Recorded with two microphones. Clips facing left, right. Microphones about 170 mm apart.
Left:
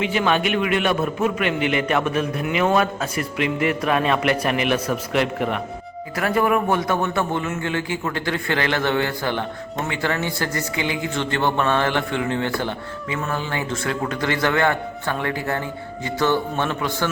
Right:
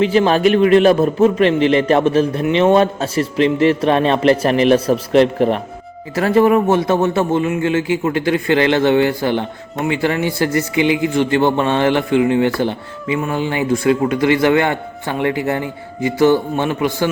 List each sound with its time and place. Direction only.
0.0 s a man's voice: 35° right (ahead or behind); by 17.1 s 15° right (ahead or behind)